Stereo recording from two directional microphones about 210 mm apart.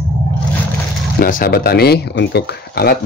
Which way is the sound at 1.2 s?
45° left (ahead or behind).